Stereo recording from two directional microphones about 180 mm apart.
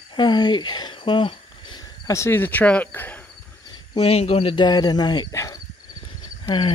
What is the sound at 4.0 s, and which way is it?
Speech, 35° left (ahead or behind).